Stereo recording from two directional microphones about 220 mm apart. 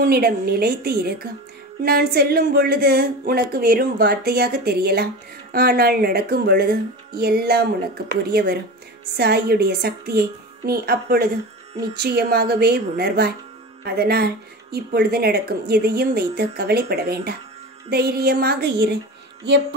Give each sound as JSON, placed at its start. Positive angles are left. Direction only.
{"t": 0.0, "sound": "speech", "side_deg": -45}